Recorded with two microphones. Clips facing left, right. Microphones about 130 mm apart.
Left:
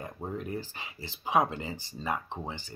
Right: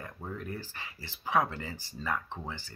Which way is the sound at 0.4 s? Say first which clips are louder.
Left 4 dB; 20° left (ahead or behind).